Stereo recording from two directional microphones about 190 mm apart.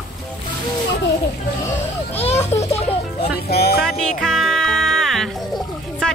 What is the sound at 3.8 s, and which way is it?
Music, centre (ahead or behind).